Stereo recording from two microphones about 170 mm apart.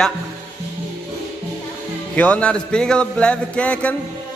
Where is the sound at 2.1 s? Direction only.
10° left (ahead or behind).